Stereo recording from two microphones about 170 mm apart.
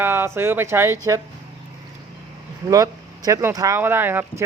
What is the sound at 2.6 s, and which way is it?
Speech, 20° right (ahead or behind).